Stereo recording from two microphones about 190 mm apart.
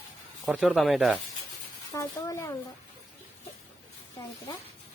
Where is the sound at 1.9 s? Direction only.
15° left (ahead or behind).